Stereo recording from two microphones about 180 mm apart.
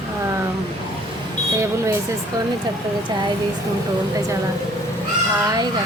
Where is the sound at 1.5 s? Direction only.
15° right (ahead or behind).